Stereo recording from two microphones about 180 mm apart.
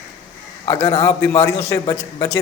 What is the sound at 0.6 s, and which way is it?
A man's voice, 20° left (ahead or behind).